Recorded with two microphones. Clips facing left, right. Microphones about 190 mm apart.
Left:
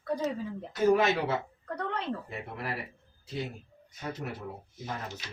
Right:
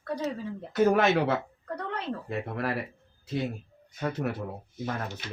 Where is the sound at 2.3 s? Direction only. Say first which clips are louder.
Right 7 dB; 60° right (ahead or behind).